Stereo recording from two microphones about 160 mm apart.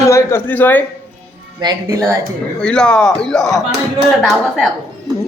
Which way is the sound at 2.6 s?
5° left (ahead or behind).